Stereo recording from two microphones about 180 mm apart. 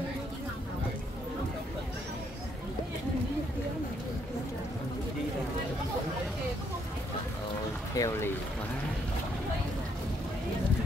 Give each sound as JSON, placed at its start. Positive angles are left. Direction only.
{"t": 7.9, "sound": "speech", "side_deg": 20}